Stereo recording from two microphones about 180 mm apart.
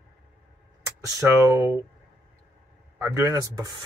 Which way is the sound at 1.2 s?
15° right (ahead or behind).